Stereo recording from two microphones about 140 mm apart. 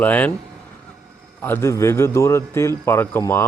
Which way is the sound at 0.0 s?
10° left (ahead or behind).